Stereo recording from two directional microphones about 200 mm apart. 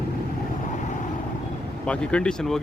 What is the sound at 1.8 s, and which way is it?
Speech, 5° left (ahead or behind).